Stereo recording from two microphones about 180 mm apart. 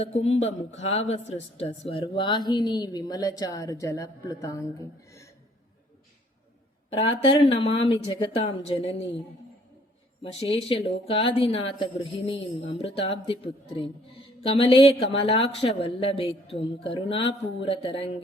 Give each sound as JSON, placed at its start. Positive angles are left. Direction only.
{"t": 0.0, "sound": "speech", "side_deg": 35}
{"t": 6.9, "sound": "speech", "side_deg": 30}
{"t": 10.5, "sound": "speech", "side_deg": 30}